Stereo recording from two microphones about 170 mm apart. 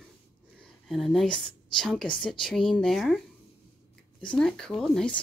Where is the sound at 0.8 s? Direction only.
Centre (ahead or behind).